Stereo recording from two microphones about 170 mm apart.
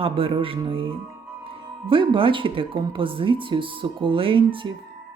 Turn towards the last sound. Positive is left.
turn(degrees=-30)  # may be behind; listen again after turning